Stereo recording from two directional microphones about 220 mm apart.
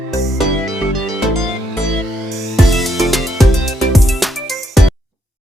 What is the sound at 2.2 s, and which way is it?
Music, centre (ahead or behind).